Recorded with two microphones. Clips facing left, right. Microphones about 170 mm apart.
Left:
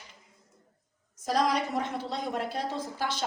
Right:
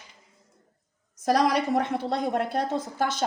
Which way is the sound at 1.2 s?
70° right (ahead or behind).